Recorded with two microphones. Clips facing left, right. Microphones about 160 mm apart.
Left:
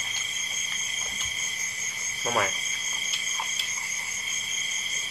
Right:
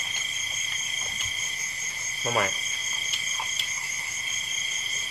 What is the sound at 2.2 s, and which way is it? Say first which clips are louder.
Speech: even; centre (ahead or behind).